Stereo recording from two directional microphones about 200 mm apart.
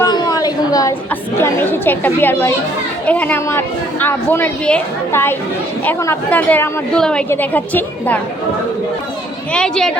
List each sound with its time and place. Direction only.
0.0 s a sound: 20° left (ahead or behind)
1.4 s a woman's voice: 10° left (ahead or behind)
9.5 s a woman's voice: 5° left (ahead or behind)